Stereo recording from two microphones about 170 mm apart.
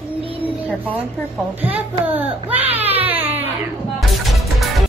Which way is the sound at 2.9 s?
10° right (ahead or behind).